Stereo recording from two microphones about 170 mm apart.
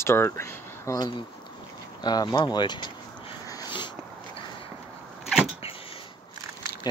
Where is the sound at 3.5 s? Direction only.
25° left (ahead or behind).